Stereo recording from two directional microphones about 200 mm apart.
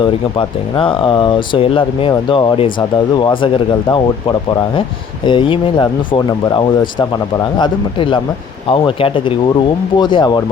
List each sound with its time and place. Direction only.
0.0 s speech: 25° left (ahead or behind)
5.2 s speech: 25° left (ahead or behind)